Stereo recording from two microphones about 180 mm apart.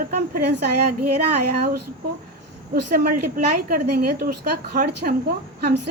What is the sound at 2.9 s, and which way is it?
Speech, 55° right (ahead or behind).